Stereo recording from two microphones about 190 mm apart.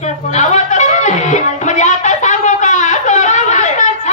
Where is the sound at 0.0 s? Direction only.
40° left (ahead or behind).